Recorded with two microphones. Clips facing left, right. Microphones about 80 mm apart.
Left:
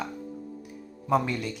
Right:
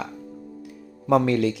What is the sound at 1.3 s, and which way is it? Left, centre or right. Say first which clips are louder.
Speech: right 11 dB; right.